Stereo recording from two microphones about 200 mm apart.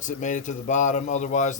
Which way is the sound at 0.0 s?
40° left (ahead or behind).